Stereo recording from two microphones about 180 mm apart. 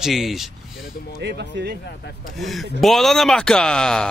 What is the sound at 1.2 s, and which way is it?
Speech, 70° right (ahead or behind).